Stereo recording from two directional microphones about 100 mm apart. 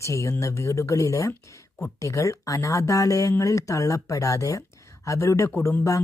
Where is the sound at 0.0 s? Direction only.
30° left (ahead or behind).